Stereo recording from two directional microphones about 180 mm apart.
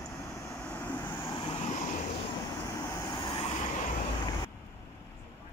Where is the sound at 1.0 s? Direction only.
25° left (ahead or behind).